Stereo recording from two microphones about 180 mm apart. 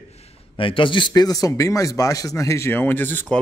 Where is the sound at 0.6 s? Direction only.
30° left (ahead or behind).